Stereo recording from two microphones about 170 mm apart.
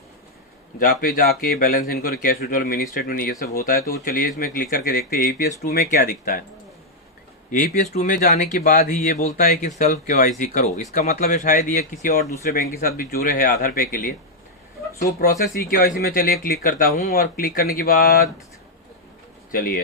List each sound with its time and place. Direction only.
0.8 s speech: 55° left (ahead or behind)
7.5 s speech: 55° left (ahead or behind)
9.6 s speech: 45° left (ahead or behind)
15.2 s speech: 55° left (ahead or behind)
19.5 s speech: 55° left (ahead or behind)